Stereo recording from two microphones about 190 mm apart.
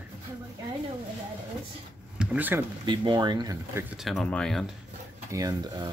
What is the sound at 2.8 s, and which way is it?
Speech, 25° right (ahead or behind).